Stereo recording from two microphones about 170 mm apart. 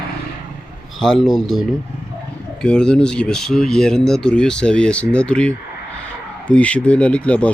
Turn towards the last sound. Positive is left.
turn(degrees=10)  # may be behind; listen again after turning